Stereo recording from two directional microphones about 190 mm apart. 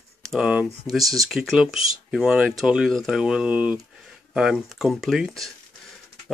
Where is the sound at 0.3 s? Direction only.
5° right (ahead or behind).